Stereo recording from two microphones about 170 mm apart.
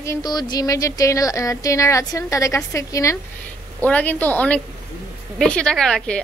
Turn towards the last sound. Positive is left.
turn(degrees=5)  # may be behind; listen again after turning